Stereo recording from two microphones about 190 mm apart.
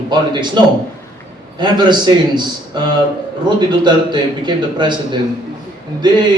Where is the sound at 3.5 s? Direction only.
25° right (ahead or behind).